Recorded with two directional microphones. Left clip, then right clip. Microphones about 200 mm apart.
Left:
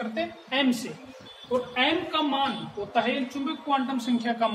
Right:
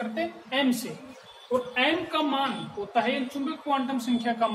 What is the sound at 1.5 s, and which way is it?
A woman's voice, 10° left (ahead or behind).